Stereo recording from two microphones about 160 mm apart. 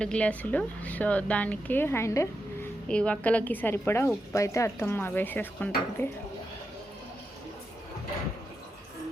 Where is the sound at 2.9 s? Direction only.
5° left (ahead or behind).